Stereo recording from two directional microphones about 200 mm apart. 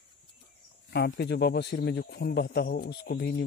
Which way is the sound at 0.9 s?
55° left (ahead or behind).